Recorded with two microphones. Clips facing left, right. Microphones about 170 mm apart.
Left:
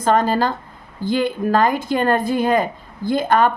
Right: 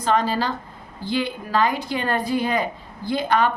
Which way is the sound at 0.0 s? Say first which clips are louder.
Left 4 dB; 45° left (ahead or behind).